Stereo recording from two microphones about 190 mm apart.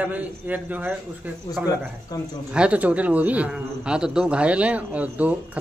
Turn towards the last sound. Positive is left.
turn(degrees=-10)  # may be behind; listen again after turning